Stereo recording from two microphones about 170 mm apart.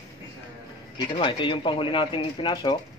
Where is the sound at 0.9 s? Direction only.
30° left (ahead or behind).